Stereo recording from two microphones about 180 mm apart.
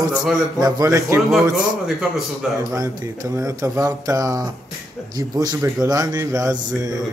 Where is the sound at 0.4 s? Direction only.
20° right (ahead or behind).